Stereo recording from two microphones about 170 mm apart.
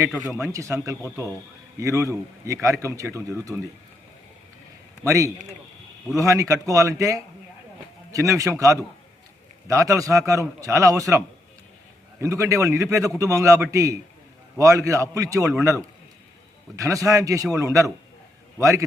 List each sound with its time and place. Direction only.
0.2 s a man's voice: 15° right (ahead or behind)
5.0 s a man's voice: 20° right (ahead or behind)
12.2 s a man's voice: 15° right (ahead or behind)